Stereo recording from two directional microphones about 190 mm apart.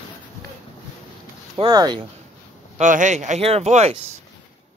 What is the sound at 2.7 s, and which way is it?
Speech, 40° right (ahead or behind).